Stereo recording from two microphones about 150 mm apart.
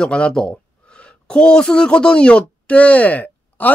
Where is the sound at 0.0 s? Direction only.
5° left (ahead or behind).